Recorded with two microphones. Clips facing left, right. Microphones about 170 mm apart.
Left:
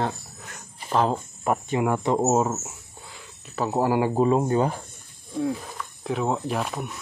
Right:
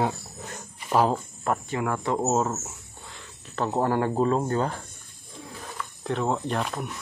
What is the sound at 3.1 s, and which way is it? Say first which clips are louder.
Speech: even; 5° left (ahead or behind).